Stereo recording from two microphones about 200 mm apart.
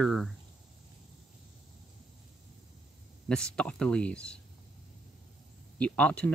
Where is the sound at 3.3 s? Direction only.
5° left (ahead or behind).